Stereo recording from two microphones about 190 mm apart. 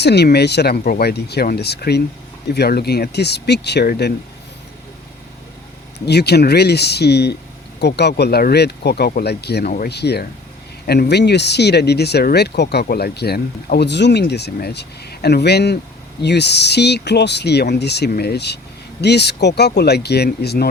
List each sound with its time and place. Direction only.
0.0 s speech: 60° left (ahead or behind)
6.1 s speech: 60° left (ahead or behind)